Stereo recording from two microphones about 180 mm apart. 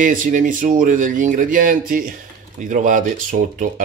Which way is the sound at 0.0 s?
45° right (ahead or behind).